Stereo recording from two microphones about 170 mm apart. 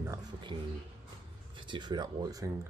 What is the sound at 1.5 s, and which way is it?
Speech, 30° right (ahead or behind).